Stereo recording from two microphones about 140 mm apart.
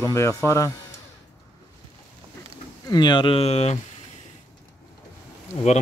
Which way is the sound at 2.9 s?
35° left (ahead or behind).